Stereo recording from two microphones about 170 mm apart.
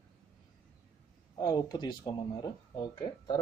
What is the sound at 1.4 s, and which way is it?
Speech, 20° left (ahead or behind).